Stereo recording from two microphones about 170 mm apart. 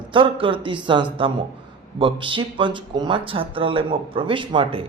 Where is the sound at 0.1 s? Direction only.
30° right (ahead or behind).